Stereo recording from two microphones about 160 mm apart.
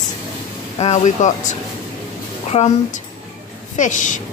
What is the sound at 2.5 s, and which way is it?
Speech, 40° left (ahead or behind).